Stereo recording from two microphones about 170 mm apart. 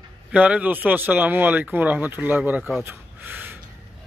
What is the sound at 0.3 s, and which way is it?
Speech, 5° right (ahead or behind).